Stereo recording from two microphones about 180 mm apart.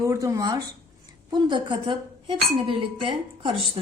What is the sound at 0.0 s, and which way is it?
A woman's voice, 15° right (ahead or behind).